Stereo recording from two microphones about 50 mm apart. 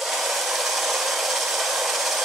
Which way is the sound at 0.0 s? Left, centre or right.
Centre.